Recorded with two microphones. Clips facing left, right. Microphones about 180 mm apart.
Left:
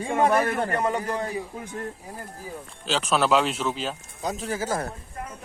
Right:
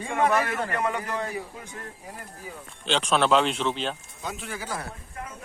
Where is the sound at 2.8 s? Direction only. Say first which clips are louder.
Even; 5° left (ahead or behind).